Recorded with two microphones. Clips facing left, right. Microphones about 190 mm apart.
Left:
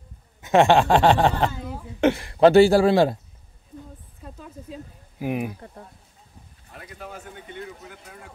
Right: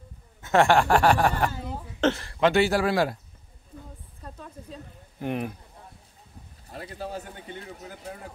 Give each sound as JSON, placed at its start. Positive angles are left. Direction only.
{"t": 0.4, "sound": "speech", "side_deg": 20}
{"t": 2.0, "sound": "a sound", "side_deg": 15}
{"t": 2.4, "sound": "speech", "side_deg": 35}
{"t": 4.2, "sound": "a sound", "side_deg": 5}
{"t": 5.2, "sound": "speech", "side_deg": 5}
{"t": 6.7, "sound": "speech", "side_deg": -30}